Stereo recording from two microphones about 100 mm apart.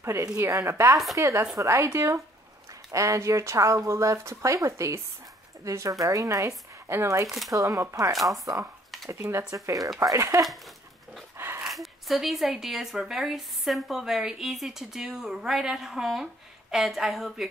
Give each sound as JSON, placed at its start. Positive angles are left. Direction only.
{"t": 0.0, "sound": "speech", "side_deg": -25}
{"t": 7.2, "sound": "speech", "side_deg": 0}
{"t": 7.5, "sound": "speech", "side_deg": -35}
{"t": 8.1, "sound": "speech", "side_deg": 0}
{"t": 9.1, "sound": "speech", "side_deg": -25}
{"t": 11.3, "sound": "dog", "side_deg": -25}
{"t": 11.6, "sound": "speech", "side_deg": 0}